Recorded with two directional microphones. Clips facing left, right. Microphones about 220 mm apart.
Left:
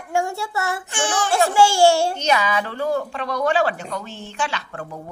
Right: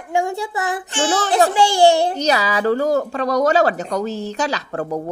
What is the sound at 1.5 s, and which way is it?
Speech, 20° right (ahead or behind).